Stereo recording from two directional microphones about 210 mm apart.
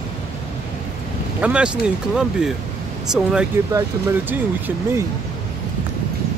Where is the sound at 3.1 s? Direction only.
5° right (ahead or behind).